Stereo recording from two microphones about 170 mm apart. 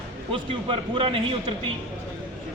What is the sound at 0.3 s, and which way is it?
A man's voice, 30° right (ahead or behind).